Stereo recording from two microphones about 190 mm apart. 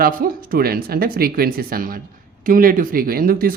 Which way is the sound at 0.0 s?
50° right (ahead or behind).